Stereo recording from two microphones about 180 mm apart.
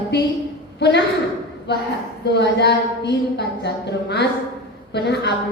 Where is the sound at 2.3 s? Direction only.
70° left (ahead or behind).